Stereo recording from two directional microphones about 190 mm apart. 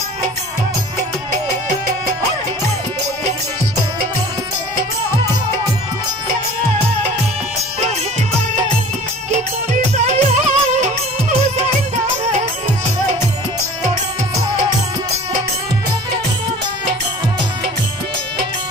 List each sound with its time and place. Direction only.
9.9 s music: 35° right (ahead or behind)